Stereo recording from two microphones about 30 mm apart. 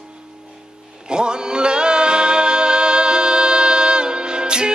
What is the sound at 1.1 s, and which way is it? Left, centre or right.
Music, right.